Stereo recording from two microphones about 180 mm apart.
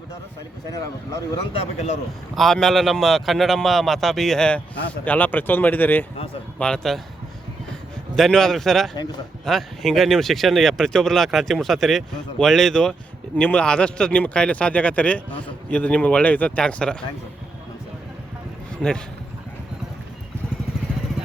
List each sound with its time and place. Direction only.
0.7 s speech: 20° left (ahead or behind)
2.3 s a man's voice: centre (ahead or behind)
8.1 s a man's voice: centre (ahead or behind)
18.8 s a man's voice: 5° left (ahead or behind)